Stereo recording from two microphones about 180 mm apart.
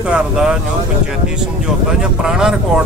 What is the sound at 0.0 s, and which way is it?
Speech, 5° right (ahead or behind).